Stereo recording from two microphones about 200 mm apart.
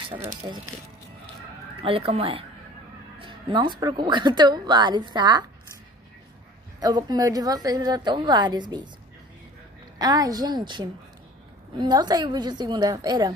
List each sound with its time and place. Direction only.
0.1 s speech: 30° right (ahead or behind)
1.8 s speech: 30° right (ahead or behind)
6.8 s speech: 20° right (ahead or behind)
9.9 s speech: 20° right (ahead or behind)